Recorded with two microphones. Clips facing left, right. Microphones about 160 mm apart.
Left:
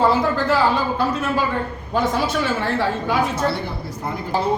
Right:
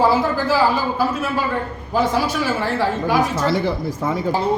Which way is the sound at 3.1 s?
90° right.